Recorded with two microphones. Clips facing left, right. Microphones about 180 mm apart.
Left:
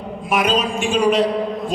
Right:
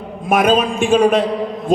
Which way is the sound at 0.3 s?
50° right (ahead or behind).